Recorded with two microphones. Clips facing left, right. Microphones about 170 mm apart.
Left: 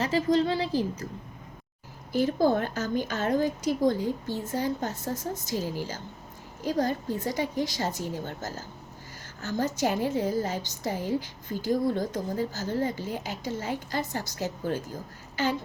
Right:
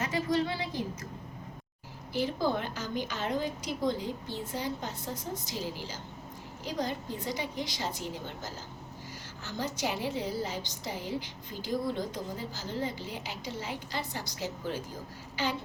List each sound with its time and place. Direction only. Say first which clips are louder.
0.0 s a woman's voice: left 6 dB; 30° left (ahead or behind)
2.1 s a woman's voice: left 6 dB; 45° left (ahead or behind)